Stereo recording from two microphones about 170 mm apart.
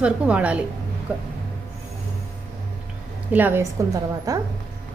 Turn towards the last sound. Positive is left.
turn(degrees=-20)  # may be behind; listen again after turning